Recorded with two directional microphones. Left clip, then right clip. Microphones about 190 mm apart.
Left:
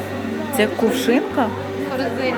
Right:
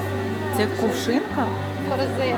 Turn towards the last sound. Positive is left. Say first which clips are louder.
# left 5 dB
turn(degrees=0)  # may be behind; listen again after turning